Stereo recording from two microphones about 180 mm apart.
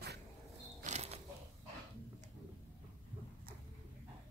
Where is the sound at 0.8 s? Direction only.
40° right (ahead or behind).